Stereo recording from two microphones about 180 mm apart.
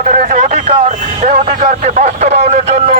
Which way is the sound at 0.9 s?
40° right (ahead or behind).